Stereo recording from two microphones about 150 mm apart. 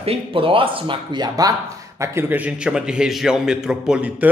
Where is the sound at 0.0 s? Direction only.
40° right (ahead or behind).